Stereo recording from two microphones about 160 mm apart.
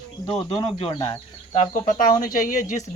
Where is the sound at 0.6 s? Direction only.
35° left (ahead or behind).